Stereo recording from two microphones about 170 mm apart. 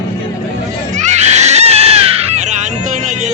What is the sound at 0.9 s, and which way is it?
Screaming, 40° right (ahead or behind).